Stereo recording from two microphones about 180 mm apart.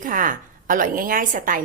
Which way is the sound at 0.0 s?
50° right (ahead or behind).